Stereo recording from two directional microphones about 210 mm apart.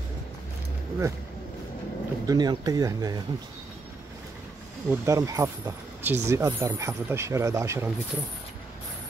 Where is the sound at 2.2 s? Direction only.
20° right (ahead or behind).